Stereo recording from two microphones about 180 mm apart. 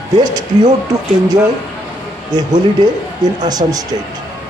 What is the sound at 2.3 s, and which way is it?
Speech, 25° right (ahead or behind).